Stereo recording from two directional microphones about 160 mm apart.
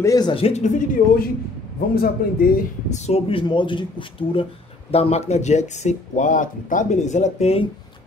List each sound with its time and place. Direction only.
0.0 s speech: 25° left (ahead or behind); by 1.2 s 50° left (ahead or behind)
2.0 s speech: 65° left (ahead or behind)
3.1 s speech: 35° left (ahead or behind)